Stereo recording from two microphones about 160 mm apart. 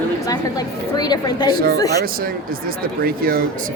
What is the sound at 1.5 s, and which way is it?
Speech, 70° right (ahead or behind).